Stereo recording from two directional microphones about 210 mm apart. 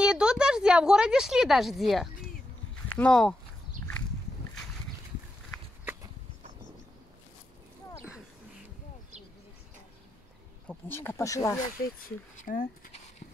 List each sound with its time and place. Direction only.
0.0 s a woman's voice: 5° right (ahead or behind)
10.7 s speech: 10° left (ahead or behind)
12.4 s speech: 40° left (ahead or behind)